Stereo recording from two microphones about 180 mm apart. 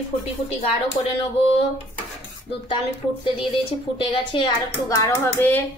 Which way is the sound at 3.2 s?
30° left (ahead or behind).